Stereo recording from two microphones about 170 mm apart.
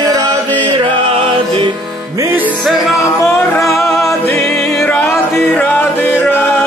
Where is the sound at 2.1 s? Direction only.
15° right (ahead or behind).